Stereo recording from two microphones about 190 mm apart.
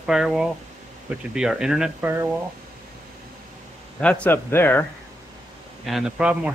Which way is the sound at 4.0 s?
5° left (ahead or behind).